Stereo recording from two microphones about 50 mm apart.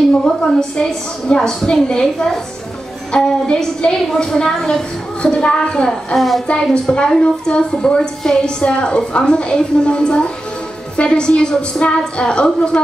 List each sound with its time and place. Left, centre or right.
0.2 s a woman's voice: centre
6.1 s a woman's voice: centre
6.7 s a woman's voice: centre